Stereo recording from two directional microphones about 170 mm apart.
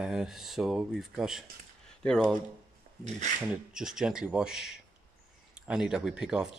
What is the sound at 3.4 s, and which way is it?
Speech, 5° right (ahead or behind).